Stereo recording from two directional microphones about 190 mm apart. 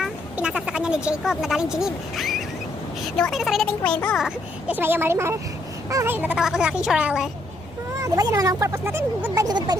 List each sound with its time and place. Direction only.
0.0 s speech: 5° right (ahead or behind)
4.7 s speech: 10° right (ahead or behind)
7.9 s speech: 15° right (ahead or behind)